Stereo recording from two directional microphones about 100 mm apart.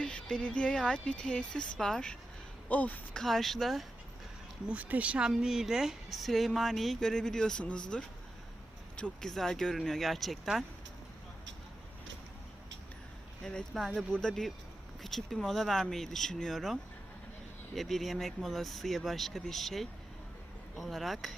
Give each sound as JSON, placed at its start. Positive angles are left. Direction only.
{"t": 0.0, "sound": "speech", "side_deg": 10}
{"t": 3.2, "sound": "a woman's voice", "side_deg": 0}
{"t": 4.7, "sound": "a woman's voice", "side_deg": -15}
{"t": 9.2, "sound": "a woman's voice", "side_deg": 5}
{"t": 13.4, "sound": "a woman's voice", "side_deg": 5}
{"t": 17.7, "sound": "a woman's voice", "side_deg": 0}